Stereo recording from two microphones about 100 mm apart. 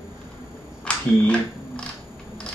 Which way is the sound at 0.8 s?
10° left (ahead or behind).